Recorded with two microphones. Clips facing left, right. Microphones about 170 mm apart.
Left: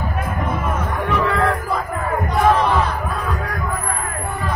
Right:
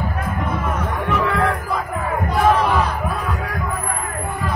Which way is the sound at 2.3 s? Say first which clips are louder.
Even; centre (ahead or behind).